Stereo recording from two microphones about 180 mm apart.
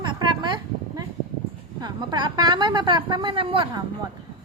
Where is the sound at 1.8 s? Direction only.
25° right (ahead or behind).